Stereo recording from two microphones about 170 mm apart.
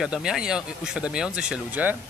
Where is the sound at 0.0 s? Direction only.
5° right (ahead or behind).